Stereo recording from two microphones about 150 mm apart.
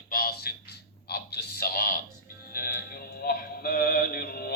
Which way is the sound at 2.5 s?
75° left (ahead or behind).